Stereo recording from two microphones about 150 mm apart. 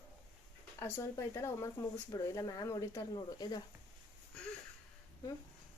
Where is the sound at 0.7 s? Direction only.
15° left (ahead or behind).